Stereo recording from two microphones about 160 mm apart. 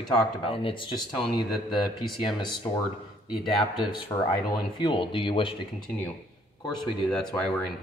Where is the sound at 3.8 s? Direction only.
25° left (ahead or behind).